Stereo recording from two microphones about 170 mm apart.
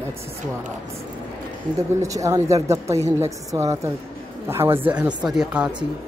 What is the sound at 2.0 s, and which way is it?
Speech, 20° right (ahead or behind).